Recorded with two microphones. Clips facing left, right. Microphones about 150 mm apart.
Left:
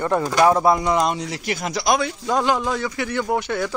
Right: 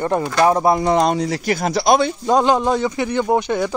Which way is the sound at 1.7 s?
30° right (ahead or behind).